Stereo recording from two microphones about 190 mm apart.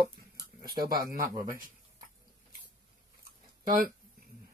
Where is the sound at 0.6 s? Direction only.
50° right (ahead or behind).